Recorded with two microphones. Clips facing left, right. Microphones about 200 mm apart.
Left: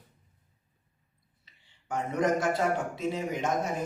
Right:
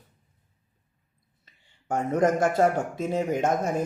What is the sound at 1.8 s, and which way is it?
Speech, 45° right (ahead or behind).